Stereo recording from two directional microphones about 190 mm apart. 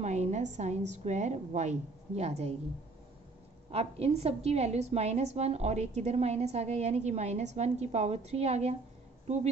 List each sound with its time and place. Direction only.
0.0 s a woman's voice: 35° right (ahead or behind)
3.7 s a woman's voice: 35° right (ahead or behind)